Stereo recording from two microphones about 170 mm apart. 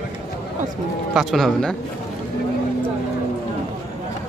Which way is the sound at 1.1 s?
Centre (ahead or behind).